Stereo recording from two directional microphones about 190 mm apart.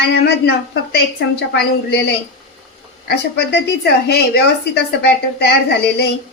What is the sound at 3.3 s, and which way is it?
A woman's voice, 60° left (ahead or behind).